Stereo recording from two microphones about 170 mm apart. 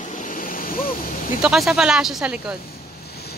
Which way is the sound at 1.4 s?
5° right (ahead or behind).